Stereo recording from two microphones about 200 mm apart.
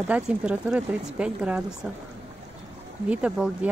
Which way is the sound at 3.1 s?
5° right (ahead or behind).